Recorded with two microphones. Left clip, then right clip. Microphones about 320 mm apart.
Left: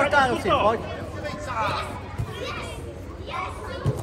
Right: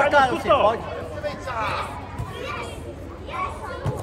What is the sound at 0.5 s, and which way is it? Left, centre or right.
Speech, left.